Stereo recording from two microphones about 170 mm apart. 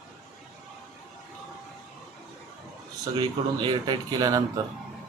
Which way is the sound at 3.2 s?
25° right (ahead or behind).